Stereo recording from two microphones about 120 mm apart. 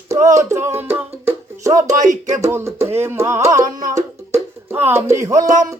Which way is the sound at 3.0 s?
20° right (ahead or behind).